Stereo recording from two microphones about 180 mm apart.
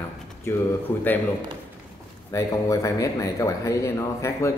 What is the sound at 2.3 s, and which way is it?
Speech, 20° left (ahead or behind).